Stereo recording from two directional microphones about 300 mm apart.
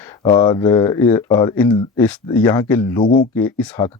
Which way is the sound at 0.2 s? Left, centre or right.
Centre.